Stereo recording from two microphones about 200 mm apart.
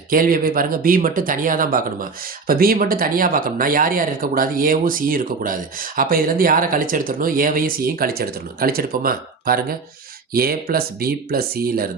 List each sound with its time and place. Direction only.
0.1 s speech: 45° right (ahead or behind)